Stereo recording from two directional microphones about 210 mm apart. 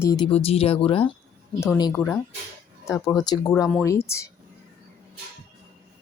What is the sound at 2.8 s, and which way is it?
Speech, 15° left (ahead or behind).